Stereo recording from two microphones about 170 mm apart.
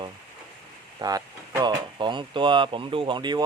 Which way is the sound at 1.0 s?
20° right (ahead or behind).